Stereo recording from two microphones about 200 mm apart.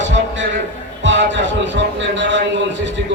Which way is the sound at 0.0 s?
65° right (ahead or behind).